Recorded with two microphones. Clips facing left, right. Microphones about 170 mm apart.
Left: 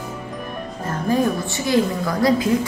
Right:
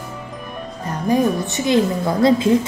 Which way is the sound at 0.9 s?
20° right (ahead or behind).